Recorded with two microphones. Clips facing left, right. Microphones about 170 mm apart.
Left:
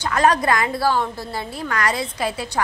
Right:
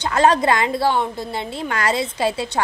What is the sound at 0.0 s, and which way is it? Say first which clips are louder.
A woman's voice: right 2 dB; 25° right (ahead or behind).